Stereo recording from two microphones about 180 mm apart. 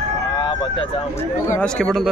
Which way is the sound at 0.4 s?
25° left (ahead or behind).